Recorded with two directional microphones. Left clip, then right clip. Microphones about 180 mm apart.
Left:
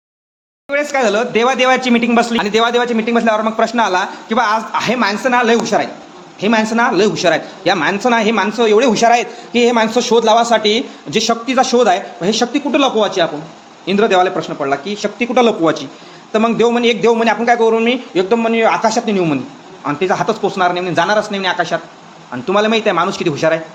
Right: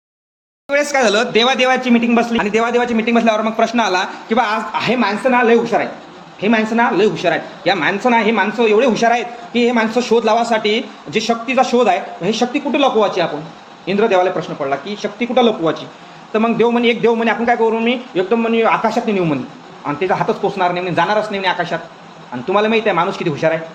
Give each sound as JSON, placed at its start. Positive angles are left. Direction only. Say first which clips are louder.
{"t": 0.7, "sound": "speech", "louder": "right 1 dB", "side_deg": 5}
{"t": 2.4, "sound": "a man's voice", "louder": "left 2 dB", "side_deg": 5}
{"t": 5.4, "sound": "a man's voice", "louder": "right 1 dB", "side_deg": 25}
{"t": 16.3, "sound": "a man's voice", "louder": "left 2 dB", "side_deg": 20}